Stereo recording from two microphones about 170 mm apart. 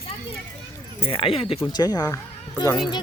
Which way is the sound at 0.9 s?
35° left (ahead or behind).